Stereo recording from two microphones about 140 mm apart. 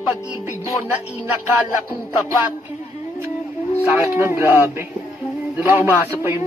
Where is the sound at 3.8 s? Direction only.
15° right (ahead or behind).